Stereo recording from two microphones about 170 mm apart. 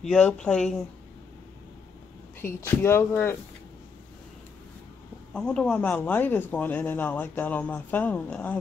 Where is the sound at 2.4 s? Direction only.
15° left (ahead or behind).